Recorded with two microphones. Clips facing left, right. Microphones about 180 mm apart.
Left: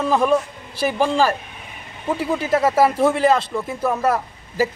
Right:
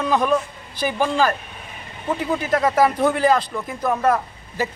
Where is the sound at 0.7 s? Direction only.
30° left (ahead or behind).